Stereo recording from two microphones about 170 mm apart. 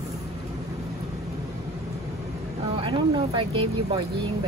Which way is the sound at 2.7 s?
30° right (ahead or behind).